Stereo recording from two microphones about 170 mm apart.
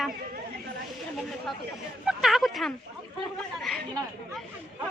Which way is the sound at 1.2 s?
Centre (ahead or behind).